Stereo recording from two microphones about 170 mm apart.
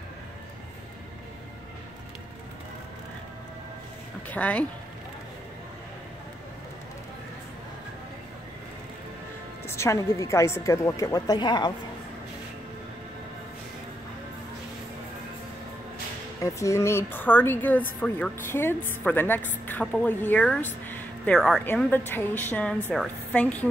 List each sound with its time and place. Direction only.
4.3 s a woman's voice: 10° left (ahead or behind)
9.7 s a woman's voice: 15° left (ahead or behind)
16.4 s a woman's voice: 15° left (ahead or behind)